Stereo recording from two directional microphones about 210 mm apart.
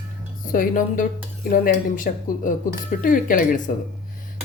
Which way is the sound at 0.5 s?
40° left (ahead or behind).